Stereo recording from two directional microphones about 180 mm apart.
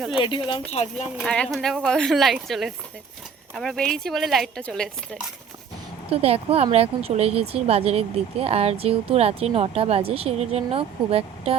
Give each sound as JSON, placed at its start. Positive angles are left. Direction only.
{"t": 0.2, "sound": "speech", "side_deg": 30}
{"t": 1.2, "sound": "speech", "side_deg": 5}
{"t": 6.1, "sound": "speech", "side_deg": -35}